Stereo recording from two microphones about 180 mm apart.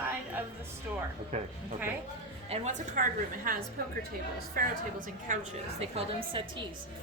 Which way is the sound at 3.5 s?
50° right (ahead or behind).